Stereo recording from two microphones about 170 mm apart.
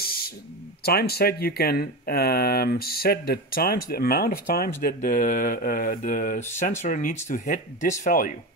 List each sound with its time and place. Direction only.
0.8 s speech: 65° left (ahead or behind)